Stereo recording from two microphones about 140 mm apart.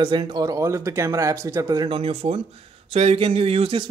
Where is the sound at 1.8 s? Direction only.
40° right (ahead or behind).